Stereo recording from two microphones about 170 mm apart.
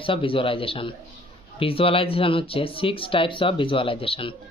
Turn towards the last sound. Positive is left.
turn(degrees=30)  # may be behind; listen again after turning